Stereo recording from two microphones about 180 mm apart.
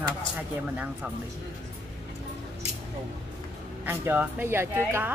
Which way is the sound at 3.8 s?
10° right (ahead or behind).